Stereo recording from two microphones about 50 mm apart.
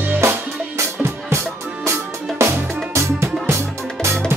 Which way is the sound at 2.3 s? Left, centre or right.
Right.